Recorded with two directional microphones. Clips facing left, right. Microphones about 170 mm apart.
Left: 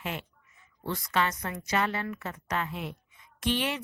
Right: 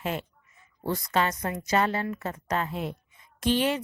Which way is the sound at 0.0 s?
40° right (ahead or behind).